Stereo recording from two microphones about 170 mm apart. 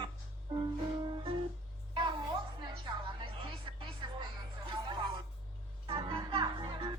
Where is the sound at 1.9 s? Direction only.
30° right (ahead or behind).